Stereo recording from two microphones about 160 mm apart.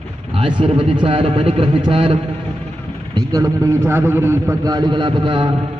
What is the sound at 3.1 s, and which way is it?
A man's voice, 20° right (ahead or behind).